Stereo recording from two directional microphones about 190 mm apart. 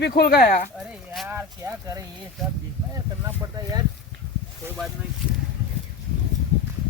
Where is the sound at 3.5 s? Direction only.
20° right (ahead or behind).